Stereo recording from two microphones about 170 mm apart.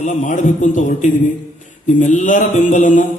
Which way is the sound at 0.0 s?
45° left (ahead or behind).